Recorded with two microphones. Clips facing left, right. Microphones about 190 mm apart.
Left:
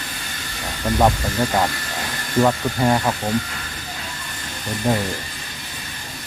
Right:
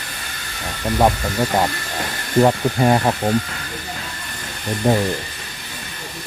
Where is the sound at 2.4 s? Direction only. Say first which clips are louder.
Right 3 dB; 20° right (ahead or behind).